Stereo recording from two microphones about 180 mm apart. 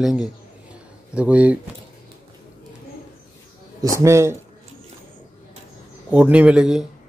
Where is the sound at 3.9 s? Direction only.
15° right (ahead or behind).